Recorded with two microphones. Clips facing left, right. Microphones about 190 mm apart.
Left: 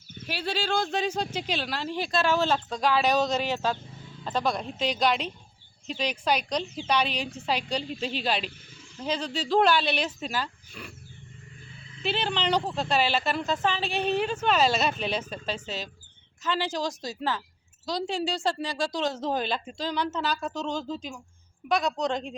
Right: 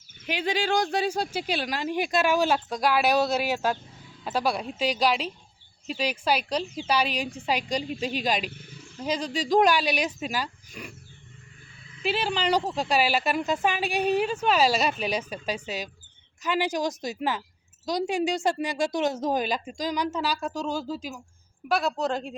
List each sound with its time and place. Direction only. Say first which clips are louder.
0.3 s speech: right 3 dB; 15° right (ahead or behind)
12.0 s a woman's voice: right 2 dB; 10° right (ahead or behind)